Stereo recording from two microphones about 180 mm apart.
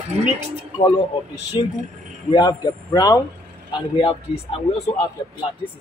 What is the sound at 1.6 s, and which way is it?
A man's voice, 30° left (ahead or behind).